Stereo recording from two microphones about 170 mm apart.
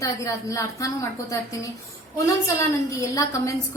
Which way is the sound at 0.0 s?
20° left (ahead or behind).